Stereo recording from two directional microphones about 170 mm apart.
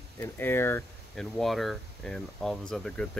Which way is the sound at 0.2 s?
15° left (ahead or behind).